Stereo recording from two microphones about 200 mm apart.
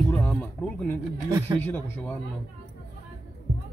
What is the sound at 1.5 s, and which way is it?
Speech, 10° left (ahead or behind).